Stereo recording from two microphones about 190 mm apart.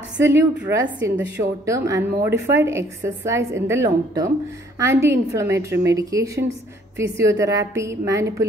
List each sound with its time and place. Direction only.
0.2 s a woman's voice: 10° right (ahead or behind)